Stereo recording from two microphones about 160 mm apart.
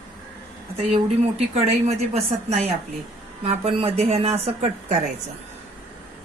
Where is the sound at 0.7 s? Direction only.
40° right (ahead or behind).